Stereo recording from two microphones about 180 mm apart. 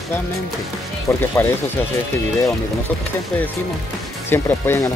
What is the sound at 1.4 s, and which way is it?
Speech, 10° left (ahead or behind).